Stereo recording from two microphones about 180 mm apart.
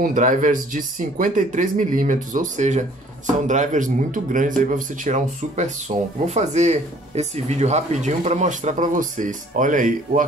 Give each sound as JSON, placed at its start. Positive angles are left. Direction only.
{"t": 0.0, "sound": "speech", "side_deg": -45}